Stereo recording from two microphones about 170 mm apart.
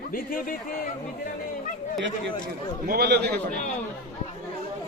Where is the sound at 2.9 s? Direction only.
70° right (ahead or behind).